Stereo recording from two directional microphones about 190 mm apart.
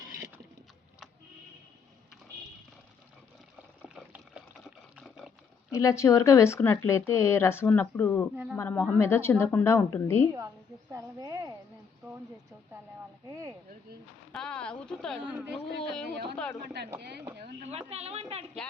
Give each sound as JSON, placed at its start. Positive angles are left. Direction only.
{"t": 3.8, "sound": "liquid", "side_deg": -5}
{"t": 5.7, "sound": "speech", "side_deg": 15}
{"t": 10.9, "sound": "speech", "side_deg": -20}
{"t": 13.2, "sound": "speech", "side_deg": -15}
{"t": 14.3, "sound": "speech", "side_deg": 5}
{"t": 17.0, "sound": "speech", "side_deg": -60}
{"t": 17.6, "sound": "a woman's voice", "side_deg": -35}